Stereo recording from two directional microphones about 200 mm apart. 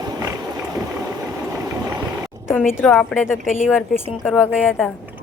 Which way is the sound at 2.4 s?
10° left (ahead or behind).